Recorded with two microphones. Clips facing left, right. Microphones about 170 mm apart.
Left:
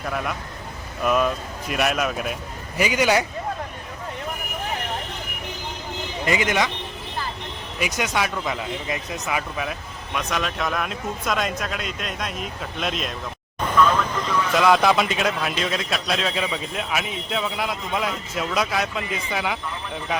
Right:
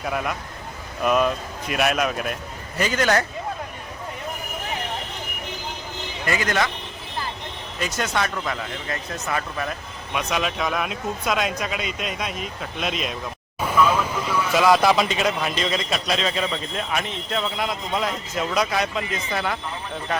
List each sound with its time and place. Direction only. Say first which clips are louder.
0.0 s speech: right 1 dB; 5° right (ahead or behind)
2.7 s speech: left 1 dB; 10° left (ahead or behind)
6.2 s speech: left 1 dB; 20° left (ahead or behind)
7.8 s speech: left 1 dB; 15° left (ahead or behind)
10.2 s speech: right 1 dB; 5° right (ahead or behind)